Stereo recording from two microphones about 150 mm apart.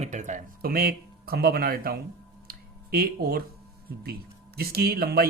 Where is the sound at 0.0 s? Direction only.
50° right (ahead or behind); by 2.0 s 85° right.